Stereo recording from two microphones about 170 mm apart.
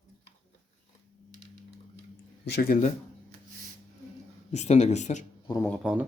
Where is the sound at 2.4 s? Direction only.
65° left (ahead or behind).